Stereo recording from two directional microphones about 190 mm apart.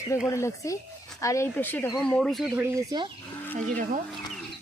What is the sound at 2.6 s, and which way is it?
Speech, 20° right (ahead or behind).